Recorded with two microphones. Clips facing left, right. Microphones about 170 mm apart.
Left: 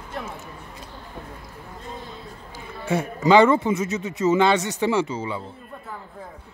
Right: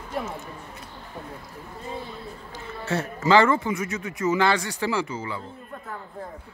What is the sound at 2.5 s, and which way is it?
Speech, 10° left (ahead or behind).